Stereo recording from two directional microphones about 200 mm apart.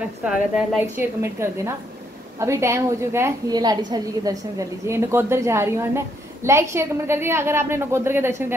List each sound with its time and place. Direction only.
0.2 s a woman's voice: 5° right (ahead or behind)